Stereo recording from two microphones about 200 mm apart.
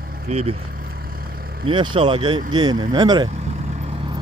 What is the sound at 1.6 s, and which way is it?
Speech, 25° right (ahead or behind).